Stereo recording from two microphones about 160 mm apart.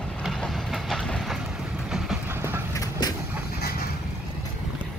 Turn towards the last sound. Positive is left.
turn(degrees=25)  # may be behind; listen again after turning